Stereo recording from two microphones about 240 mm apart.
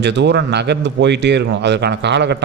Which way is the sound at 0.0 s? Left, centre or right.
Right.